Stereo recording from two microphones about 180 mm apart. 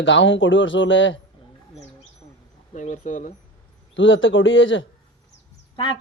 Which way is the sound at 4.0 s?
90° left.